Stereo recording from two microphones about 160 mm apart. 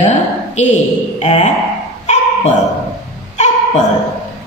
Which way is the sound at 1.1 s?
45° left (ahead or behind).